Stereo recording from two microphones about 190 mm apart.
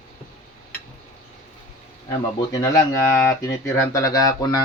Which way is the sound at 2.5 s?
15° left (ahead or behind).